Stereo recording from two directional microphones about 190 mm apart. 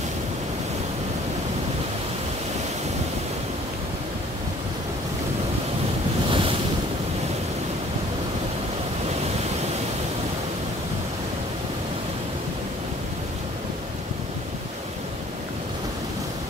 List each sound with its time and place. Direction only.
6.2 s ocean: 30° right (ahead or behind)